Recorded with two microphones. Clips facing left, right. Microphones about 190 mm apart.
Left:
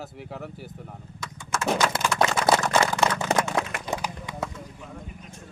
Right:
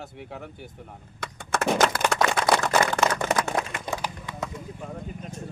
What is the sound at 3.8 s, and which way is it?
Run, 15° left (ahead or behind).